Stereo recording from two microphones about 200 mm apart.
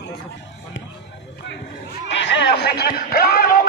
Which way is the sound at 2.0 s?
60° left (ahead or behind).